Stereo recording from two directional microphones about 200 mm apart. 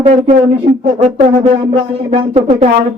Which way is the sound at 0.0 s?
30° right (ahead or behind).